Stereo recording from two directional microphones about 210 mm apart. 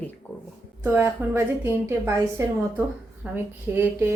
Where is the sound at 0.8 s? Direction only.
10° right (ahead or behind).